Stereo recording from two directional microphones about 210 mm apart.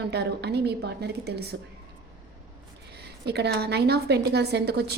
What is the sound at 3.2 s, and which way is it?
A woman's voice, 50° right (ahead or behind).